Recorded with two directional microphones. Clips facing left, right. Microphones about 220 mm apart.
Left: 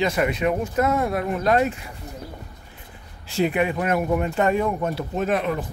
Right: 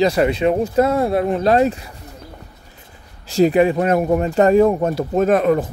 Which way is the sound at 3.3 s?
35° right (ahead or behind).